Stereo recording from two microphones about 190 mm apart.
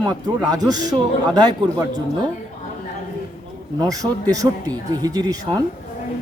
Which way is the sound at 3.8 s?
20° right (ahead or behind).